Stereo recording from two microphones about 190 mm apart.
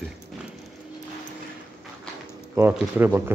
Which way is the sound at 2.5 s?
10° right (ahead or behind).